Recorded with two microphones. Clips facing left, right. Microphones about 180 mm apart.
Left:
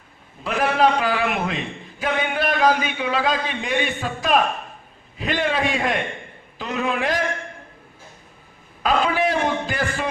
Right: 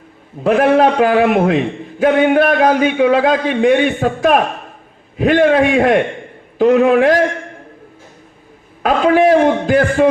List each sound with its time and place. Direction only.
0.4 s a man's voice: 55° right (ahead or behind)
8.8 s a man's voice: 60° right (ahead or behind)